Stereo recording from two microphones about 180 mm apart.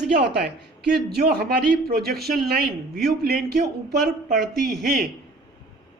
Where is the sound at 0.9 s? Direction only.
60° right (ahead or behind).